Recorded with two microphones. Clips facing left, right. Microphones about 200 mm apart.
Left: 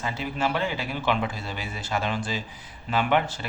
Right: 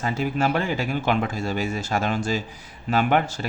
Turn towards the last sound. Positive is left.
turn(degrees=-45)  # may be behind; listen again after turning